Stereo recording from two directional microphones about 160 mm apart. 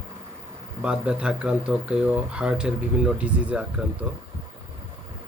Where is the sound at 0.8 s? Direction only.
5° right (ahead or behind).